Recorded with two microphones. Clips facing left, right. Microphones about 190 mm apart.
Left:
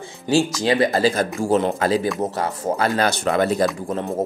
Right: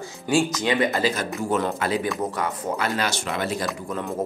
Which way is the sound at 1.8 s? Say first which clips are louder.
Left 4 dB; 35° left (ahead or behind).